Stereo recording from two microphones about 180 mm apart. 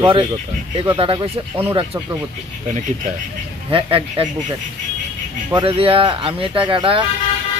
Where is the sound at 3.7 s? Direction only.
30° right (ahead or behind).